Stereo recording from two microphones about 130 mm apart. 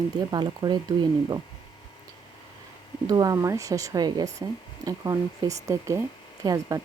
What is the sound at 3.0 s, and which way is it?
Speech, 30° right (ahead or behind).